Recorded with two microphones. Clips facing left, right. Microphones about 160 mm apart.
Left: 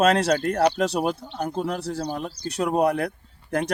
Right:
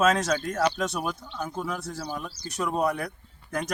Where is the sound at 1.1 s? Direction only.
30° left (ahead or behind).